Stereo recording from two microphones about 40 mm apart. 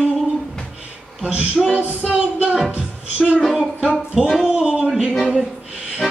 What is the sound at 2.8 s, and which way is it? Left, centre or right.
Speech, right.